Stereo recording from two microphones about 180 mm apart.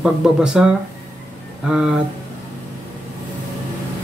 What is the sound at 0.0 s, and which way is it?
Speech, 5° right (ahead or behind).